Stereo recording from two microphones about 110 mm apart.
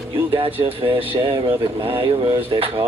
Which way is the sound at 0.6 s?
55° right (ahead or behind).